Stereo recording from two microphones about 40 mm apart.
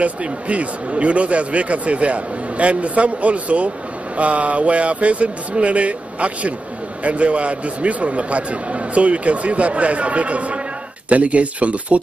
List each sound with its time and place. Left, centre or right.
0.0 s speech: right